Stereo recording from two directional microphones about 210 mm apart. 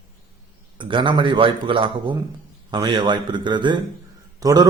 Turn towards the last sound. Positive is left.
turn(degrees=-15)  # may be behind; listen again after turning